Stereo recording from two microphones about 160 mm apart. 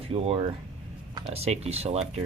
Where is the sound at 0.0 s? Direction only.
40° right (ahead or behind).